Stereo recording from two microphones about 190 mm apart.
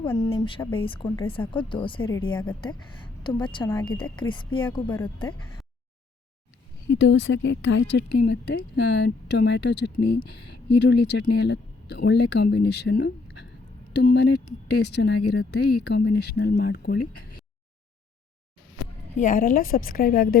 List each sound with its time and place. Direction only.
0.3 s a woman's voice: 25° left (ahead or behind)
2.0 s a woman's voice: 15° left (ahead or behind)
6.9 s a woman's voice: 70° left (ahead or behind)
19.1 s a woman's voice: 45° left (ahead or behind)